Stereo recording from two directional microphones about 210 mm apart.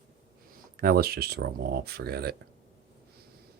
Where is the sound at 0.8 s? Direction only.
45° right (ahead or behind).